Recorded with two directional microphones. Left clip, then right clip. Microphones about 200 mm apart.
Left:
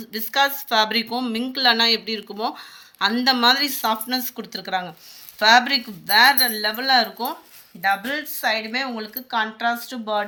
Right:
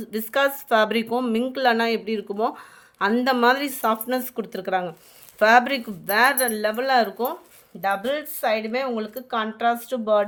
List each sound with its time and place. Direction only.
0.1 s speech: 55° right (ahead or behind)